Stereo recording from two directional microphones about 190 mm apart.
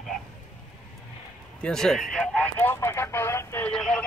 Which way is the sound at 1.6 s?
5° left (ahead or behind).